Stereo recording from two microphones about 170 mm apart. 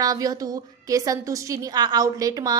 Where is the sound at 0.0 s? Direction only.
20° right (ahead or behind).